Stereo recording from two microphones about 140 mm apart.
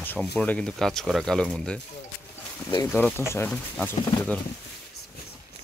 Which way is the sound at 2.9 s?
10° left (ahead or behind).